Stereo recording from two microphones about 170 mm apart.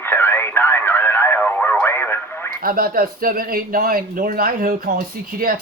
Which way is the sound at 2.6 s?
60° right (ahead or behind).